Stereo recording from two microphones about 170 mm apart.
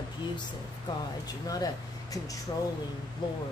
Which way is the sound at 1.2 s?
20° left (ahead or behind).